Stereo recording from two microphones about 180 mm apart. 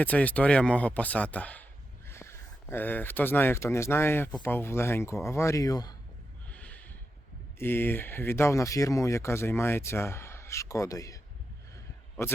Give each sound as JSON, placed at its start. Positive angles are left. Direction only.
{"t": 0.0, "sound": "speech", "side_deg": 10}
{"t": 6.5, "sound": "snort", "side_deg": 10}
{"t": 7.6, "sound": "speech", "side_deg": 10}